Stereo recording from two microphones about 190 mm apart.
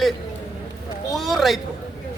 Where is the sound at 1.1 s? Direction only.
Centre (ahead or behind).